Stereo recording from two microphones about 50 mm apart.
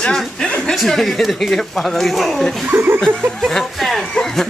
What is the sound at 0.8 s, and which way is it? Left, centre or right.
Speech, centre.